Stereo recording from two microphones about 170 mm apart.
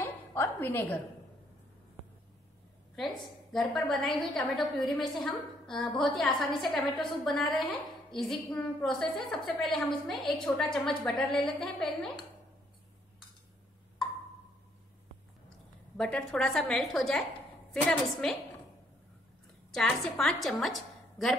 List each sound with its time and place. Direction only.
0.0 s a woman's voice: 15° left (ahead or behind)
3.5 s a woman's voice: centre (ahead or behind)
16.0 s a woman's voice: 5° left (ahead or behind)
19.7 s a woman's voice: centre (ahead or behind)